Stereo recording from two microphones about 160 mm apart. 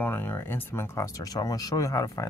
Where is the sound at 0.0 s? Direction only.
10° left (ahead or behind).